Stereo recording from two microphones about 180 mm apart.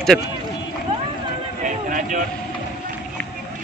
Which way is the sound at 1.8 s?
45° right (ahead or behind).